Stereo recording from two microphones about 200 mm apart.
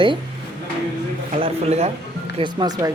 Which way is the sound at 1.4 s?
30° right (ahead or behind).